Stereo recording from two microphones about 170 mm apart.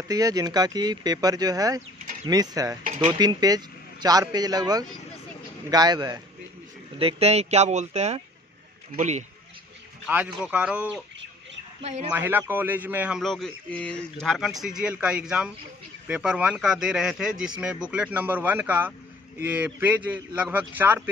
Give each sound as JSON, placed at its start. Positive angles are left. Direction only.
{"t": 0.1, "sound": "speech", "side_deg": -20}
{"t": 2.8, "sound": "speech", "side_deg": -45}
{"t": 3.2, "sound": "speech", "side_deg": -25}
{"t": 7.0, "sound": "speech", "side_deg": -35}
{"t": 10.0, "sound": "a man's voice", "side_deg": -5}
{"t": 11.8, "sound": "speech", "side_deg": -40}
{"t": 12.1, "sound": "a man's voice", "side_deg": -10}